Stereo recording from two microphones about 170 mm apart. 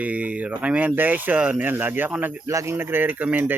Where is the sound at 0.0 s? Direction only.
10° right (ahead or behind).